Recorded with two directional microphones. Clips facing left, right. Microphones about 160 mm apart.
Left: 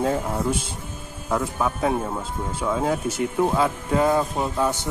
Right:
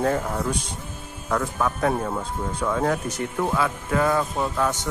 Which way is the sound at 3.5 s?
25° left (ahead or behind).